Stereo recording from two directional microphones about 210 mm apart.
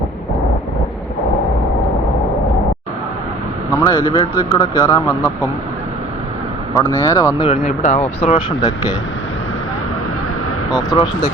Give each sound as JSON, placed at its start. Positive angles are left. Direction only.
{"t": 3.7, "sound": "speech", "side_deg": 15}
{"t": 6.7, "sound": "speech", "side_deg": 15}
{"t": 10.8, "sound": "speech", "side_deg": 20}